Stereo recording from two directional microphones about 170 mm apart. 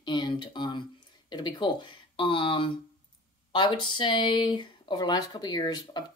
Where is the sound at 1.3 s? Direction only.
25° left (ahead or behind).